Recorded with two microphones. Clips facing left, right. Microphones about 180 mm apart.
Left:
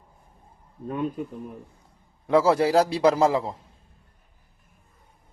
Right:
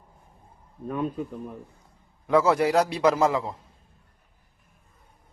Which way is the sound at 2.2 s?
30° left (ahead or behind).